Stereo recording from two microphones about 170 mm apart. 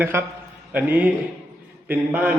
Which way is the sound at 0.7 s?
10° right (ahead or behind).